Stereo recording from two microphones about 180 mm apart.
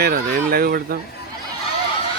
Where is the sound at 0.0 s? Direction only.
60° right (ahead or behind).